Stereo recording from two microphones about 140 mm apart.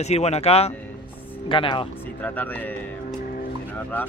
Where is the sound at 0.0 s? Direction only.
50° left (ahead or behind).